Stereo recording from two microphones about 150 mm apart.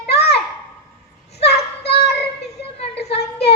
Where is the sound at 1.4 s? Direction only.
90° left.